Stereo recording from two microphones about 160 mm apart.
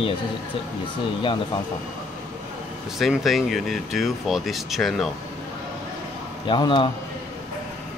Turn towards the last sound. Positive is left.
turn(degrees=30)  # may be behind; listen again after turning